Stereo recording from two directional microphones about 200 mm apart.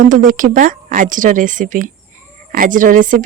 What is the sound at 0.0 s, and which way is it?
A woman's voice, 40° right (ahead or behind).